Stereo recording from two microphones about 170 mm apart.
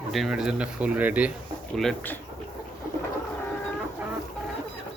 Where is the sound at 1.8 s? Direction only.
5° left (ahead or behind).